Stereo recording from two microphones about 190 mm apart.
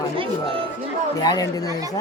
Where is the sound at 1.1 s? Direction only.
20° left (ahead or behind).